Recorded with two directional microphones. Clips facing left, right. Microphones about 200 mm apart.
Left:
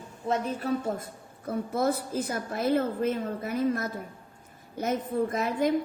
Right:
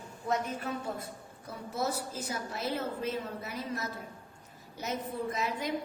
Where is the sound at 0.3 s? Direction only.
35° left (ahead or behind).